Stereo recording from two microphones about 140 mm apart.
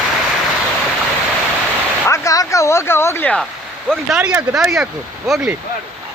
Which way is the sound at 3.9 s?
5° right (ahead or behind).